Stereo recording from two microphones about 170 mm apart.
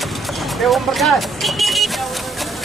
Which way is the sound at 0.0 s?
Centre (ahead or behind).